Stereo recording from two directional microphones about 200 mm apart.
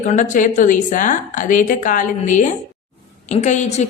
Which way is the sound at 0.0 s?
40° left (ahead or behind).